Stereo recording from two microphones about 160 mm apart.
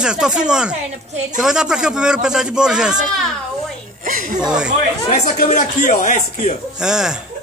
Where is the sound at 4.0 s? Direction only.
55° right (ahead or behind).